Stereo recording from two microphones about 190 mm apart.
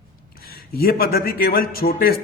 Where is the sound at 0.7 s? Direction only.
55° left (ahead or behind).